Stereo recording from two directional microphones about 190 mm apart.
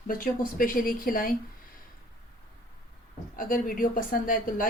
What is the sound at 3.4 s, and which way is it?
Speech, 45° left (ahead or behind).